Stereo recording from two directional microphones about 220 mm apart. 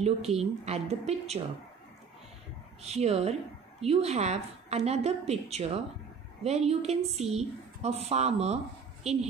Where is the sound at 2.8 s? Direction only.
30° right (ahead or behind).